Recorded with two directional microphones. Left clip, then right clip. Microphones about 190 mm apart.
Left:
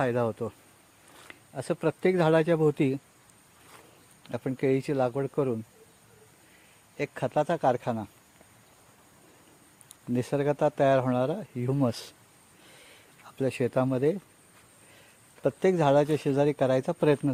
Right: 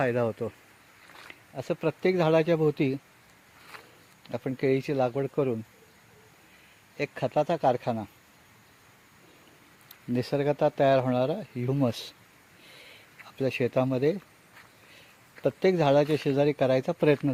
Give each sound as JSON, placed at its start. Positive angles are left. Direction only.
{"t": 0.0, "sound": "speech", "side_deg": 10}
{"t": 4.2, "sound": "speech", "side_deg": 10}
{"t": 6.9, "sound": "speech", "side_deg": 5}
{"t": 10.1, "sound": "speech", "side_deg": 5}
{"t": 12.7, "sound": "a sound", "side_deg": 0}
{"t": 15.4, "sound": "speech", "side_deg": 10}